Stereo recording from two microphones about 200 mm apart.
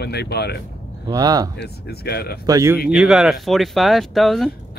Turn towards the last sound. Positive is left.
turn(degrees=0)  # may be behind; listen again after turning